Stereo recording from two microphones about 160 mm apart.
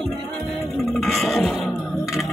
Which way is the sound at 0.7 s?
Centre (ahead or behind).